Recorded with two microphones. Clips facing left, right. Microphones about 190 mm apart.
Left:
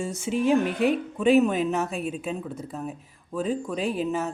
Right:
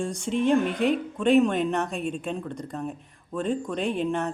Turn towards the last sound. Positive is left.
turn(degrees=5)  # may be behind; listen again after turning